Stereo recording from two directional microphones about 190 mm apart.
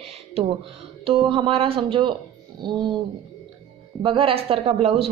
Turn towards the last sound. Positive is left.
turn(degrees=-30)  # may be behind; listen again after turning